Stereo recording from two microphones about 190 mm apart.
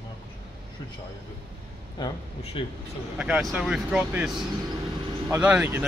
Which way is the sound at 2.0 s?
20° left (ahead or behind).